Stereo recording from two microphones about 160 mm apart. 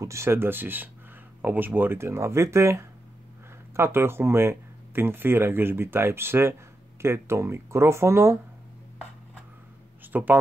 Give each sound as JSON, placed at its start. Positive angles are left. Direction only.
{"t": 0.0, "sound": "speech", "side_deg": -15}
{"t": 10.1, "sound": "speech", "side_deg": -10}